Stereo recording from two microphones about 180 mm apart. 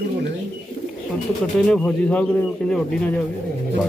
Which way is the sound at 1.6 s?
5° left (ahead or behind).